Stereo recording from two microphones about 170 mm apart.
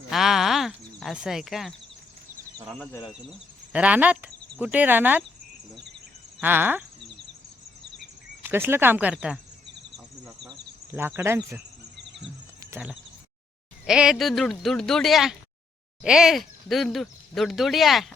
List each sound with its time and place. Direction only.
0.1 s a sound: centre (ahead or behind)
2.6 s speech: 5° right (ahead or behind)
2.9 s speech: 25° left (ahead or behind)
3.7 s speech: 10° right (ahead or behind)
6.4 s speech: 10° right (ahead or behind)
8.4 s speech: 15° right (ahead or behind)
10.9 s speech: 15° right (ahead or behind)
11.9 s music: 90° right
12.7 s speech: 5° right (ahead or behind)